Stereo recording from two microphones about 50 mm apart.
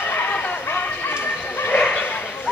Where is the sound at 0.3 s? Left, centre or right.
Left.